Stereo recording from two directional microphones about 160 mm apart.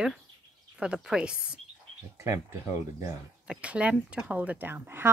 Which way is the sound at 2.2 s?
15° right (ahead or behind).